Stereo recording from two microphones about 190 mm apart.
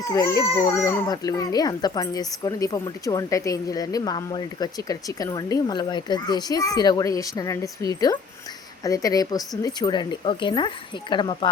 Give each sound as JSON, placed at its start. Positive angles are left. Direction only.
{"t": 0.1, "sound": "speech", "side_deg": 15}